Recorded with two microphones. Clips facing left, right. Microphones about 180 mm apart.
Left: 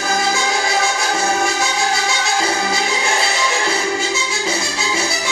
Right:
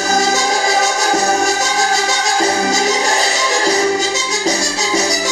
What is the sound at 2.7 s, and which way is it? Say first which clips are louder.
Music: right 4 dB; 40° right (ahead or behind).